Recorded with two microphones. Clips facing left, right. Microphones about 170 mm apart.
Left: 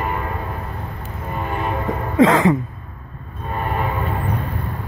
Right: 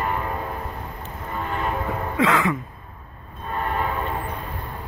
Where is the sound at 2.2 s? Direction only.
35° left (ahead or behind).